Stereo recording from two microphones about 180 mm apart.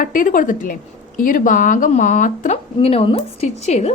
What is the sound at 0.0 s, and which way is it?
A woman's voice, 50° left (ahead or behind).